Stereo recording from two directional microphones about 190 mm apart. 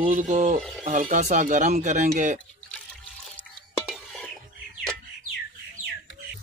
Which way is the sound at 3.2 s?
Centre (ahead or behind).